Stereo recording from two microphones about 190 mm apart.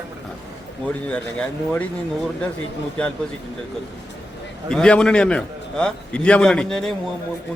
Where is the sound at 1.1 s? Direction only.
5° left (ahead or behind).